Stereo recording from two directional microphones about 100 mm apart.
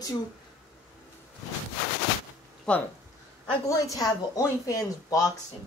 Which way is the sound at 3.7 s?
35° left (ahead or behind).